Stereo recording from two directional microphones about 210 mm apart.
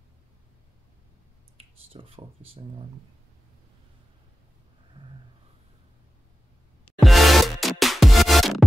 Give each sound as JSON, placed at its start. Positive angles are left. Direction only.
{"t": 1.6, "sound": "speech", "side_deg": -25}
{"t": 7.0, "sound": "music", "side_deg": 0}